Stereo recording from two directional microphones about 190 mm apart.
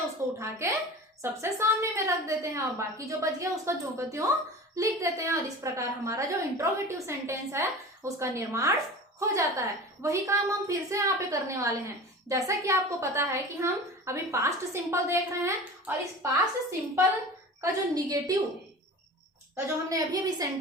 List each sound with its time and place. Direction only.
0.0 s a woman's voice: 15° right (ahead or behind)
17.6 s a woman's voice: 20° right (ahead or behind)
19.5 s a woman's voice: 20° right (ahead or behind)